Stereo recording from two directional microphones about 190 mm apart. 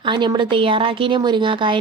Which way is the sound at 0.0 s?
25° right (ahead or behind).